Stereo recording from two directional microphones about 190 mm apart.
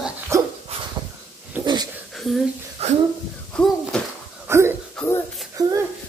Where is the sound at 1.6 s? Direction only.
20° right (ahead or behind).